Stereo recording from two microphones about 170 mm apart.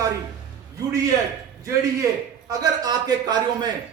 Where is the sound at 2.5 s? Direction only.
20° right (ahead or behind).